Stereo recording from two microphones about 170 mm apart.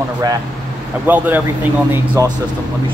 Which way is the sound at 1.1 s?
10° right (ahead or behind).